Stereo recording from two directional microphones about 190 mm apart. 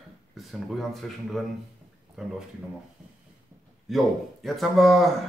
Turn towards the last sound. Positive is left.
turn(degrees=0)  # may be behind; listen again after turning